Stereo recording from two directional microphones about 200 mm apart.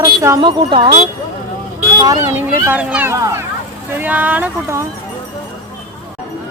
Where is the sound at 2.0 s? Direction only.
15° right (ahead or behind).